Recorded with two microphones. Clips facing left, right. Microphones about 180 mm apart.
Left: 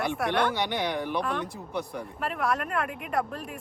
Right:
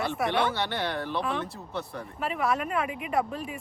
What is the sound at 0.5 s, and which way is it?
Speech, 15° left (ahead or behind).